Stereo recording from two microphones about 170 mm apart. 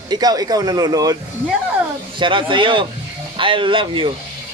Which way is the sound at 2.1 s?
30° right (ahead or behind).